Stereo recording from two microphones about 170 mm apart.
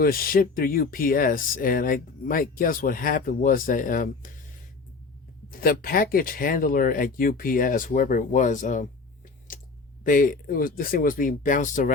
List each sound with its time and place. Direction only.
0.0 s speech: 60° left (ahead or behind)
5.5 s speech: 60° left (ahead or behind)
9.5 s a sound: 50° left (ahead or behind)
10.0 s speech: 55° left (ahead or behind)